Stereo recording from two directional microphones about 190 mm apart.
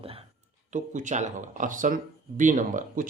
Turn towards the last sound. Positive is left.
turn(degrees=-40)  # may be behind; listen again after turning